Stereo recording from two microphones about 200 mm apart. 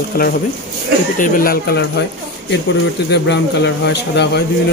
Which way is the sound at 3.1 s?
55° left (ahead or behind).